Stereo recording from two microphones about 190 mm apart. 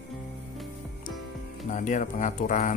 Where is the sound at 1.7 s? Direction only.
40° left (ahead or behind).